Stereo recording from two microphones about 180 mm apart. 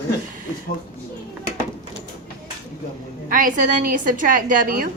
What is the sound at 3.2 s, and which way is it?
A woman's voice, 50° right (ahead or behind).